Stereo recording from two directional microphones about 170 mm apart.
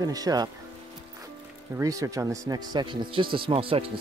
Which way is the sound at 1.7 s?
20° right (ahead or behind).